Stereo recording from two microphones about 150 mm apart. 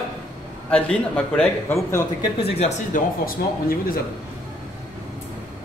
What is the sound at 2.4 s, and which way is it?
Speech, 45° left (ahead or behind).